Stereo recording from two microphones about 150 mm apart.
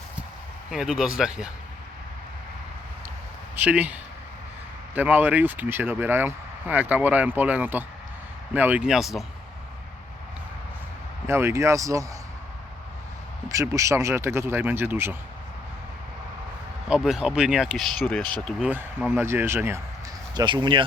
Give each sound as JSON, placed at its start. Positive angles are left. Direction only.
{"t": 0.7, "sound": "speech", "side_deg": -5}
{"t": 3.5, "sound": "speech", "side_deg": -10}
{"t": 4.9, "sound": "speech", "side_deg": -10}
{"t": 11.3, "sound": "speech", "side_deg": -15}
{"t": 13.5, "sound": "speech", "side_deg": -20}
{"t": 16.9, "sound": "speech", "side_deg": -5}
{"t": 18.7, "sound": "speech", "side_deg": -15}
{"t": 20.3, "sound": "speech", "side_deg": -30}